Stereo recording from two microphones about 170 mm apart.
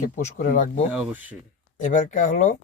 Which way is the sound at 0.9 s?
10° right (ahead or behind).